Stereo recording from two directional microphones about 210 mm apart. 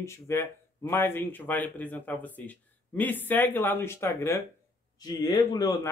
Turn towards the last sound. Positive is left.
turn(degrees=15)  # may be behind; listen again after turning